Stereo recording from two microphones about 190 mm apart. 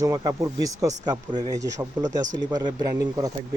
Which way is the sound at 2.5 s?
20° right (ahead or behind).